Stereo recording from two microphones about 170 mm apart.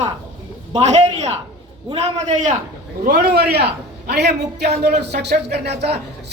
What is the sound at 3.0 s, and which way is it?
Speech, 70° right (ahead or behind).